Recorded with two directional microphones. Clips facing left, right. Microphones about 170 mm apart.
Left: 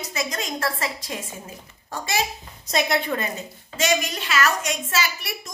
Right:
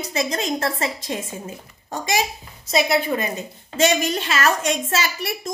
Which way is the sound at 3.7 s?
30° right (ahead or behind).